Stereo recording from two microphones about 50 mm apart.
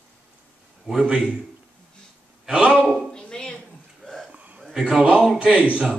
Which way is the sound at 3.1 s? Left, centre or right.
Centre.